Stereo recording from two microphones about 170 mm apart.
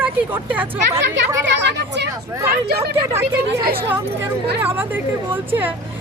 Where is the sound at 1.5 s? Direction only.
90° right.